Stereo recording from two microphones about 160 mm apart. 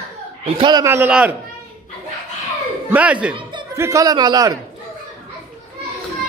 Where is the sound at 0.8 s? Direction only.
10° right (ahead or behind).